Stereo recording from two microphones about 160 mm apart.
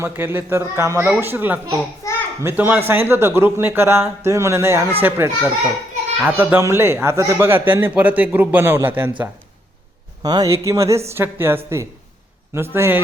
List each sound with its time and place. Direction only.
0.0 s speech: 15° right (ahead or behind)
2.0 s children playing: 20° left (ahead or behind)
2.4 s speech: 15° right (ahead or behind)
10.2 s speech: 25° right (ahead or behind)